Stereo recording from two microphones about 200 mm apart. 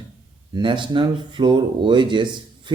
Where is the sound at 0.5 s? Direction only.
25° right (ahead or behind).